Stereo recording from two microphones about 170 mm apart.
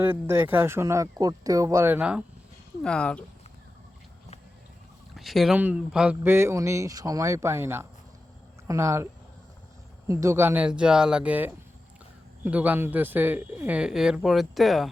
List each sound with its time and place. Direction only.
0.0 s speech: 10° right (ahead or behind)
2.8 s speech: 5° left (ahead or behind)
5.1 s speech: centre (ahead or behind); by 9.0 s 15° right (ahead or behind)
10.1 s speech: 20° right (ahead or behind); by 14.8 s centre (ahead or behind)